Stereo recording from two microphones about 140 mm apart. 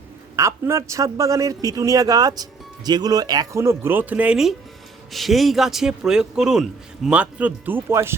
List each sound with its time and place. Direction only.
0.3 s a man's voice: 20° right (ahead or behind)